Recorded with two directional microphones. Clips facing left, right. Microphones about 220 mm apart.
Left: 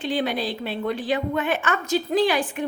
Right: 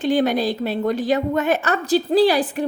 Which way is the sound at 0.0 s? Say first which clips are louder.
Right 6 dB; 45° right (ahead or behind).